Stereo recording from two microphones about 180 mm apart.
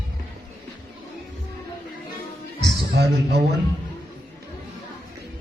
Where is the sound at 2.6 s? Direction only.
65° right (ahead or behind).